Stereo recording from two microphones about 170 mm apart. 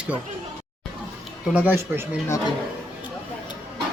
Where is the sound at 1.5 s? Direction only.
10° right (ahead or behind).